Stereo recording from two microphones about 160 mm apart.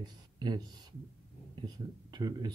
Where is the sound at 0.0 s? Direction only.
25° right (ahead or behind).